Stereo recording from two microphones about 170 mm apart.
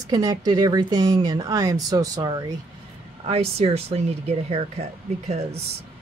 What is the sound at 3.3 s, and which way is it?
Speech, 35° right (ahead or behind).